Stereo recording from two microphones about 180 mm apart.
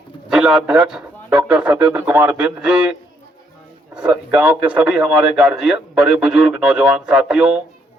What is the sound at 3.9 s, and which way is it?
A man's voice, 5° right (ahead or behind).